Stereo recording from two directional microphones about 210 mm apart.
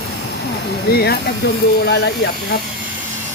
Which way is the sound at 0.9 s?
50° left (ahead or behind).